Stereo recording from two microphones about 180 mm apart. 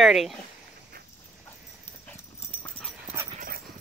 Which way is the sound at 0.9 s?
55° right (ahead or behind).